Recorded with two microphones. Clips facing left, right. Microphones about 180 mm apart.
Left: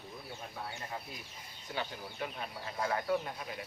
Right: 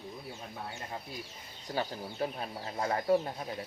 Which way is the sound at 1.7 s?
40° right (ahead or behind).